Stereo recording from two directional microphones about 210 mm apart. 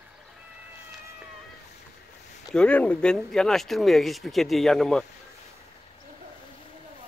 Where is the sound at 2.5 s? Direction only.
5° left (ahead or behind).